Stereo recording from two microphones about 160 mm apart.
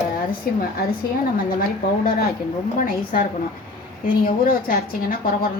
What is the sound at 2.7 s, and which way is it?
A woman's voice, 60° left (ahead or behind).